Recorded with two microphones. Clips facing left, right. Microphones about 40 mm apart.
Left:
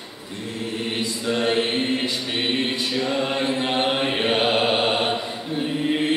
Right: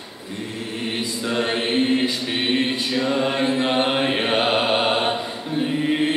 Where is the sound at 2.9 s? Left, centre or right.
Centre.